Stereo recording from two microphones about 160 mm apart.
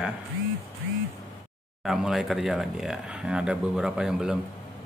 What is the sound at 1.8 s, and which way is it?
Speech, centre (ahead or behind).